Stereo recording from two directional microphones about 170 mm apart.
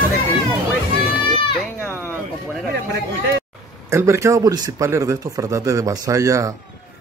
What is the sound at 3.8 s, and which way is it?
A man's voice, 15° right (ahead or behind).